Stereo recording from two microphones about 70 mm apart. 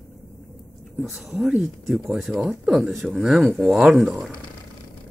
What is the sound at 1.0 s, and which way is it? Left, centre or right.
Speech, centre.